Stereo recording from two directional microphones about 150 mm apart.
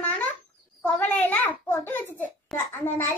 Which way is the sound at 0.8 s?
10° left (ahead or behind).